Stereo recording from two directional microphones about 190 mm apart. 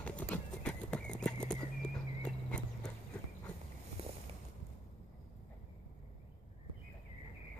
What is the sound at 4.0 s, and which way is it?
Boat, 30° right (ahead or behind).